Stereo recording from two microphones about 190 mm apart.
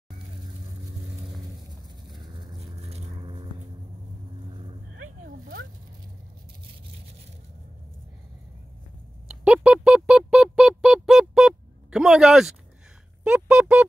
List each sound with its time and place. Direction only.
2.0 s vehicle: centre (ahead or behind)
2.8 s vehicle: 30° right (ahead or behind)
5.2 s dog: 50° right (ahead or behind)
9.4 s music: 5° right (ahead or behind)
13.2 s speech: 5° right (ahead or behind)